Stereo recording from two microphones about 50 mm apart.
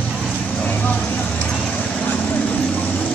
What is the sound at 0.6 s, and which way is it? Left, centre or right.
Vehicle, left.